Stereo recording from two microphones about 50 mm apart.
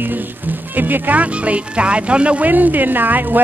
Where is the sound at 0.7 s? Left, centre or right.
Right.